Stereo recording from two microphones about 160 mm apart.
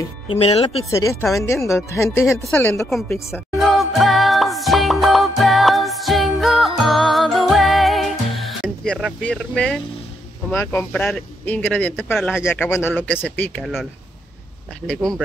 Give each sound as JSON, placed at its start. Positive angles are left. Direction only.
{"t": 0.3, "sound": "speech", "side_deg": 40}
{"t": 0.8, "sound": "speech", "side_deg": 20}
{"t": 2.4, "sound": "speech", "side_deg": 5}
{"t": 2.9, "sound": "speech", "side_deg": 0}
{"t": 3.5, "sound": "music", "side_deg": 0}
{"t": 9.2, "sound": "speech", "side_deg": 5}
{"t": 13.6, "sound": "speech", "side_deg": 0}
{"t": 14.9, "sound": "speech", "side_deg": 5}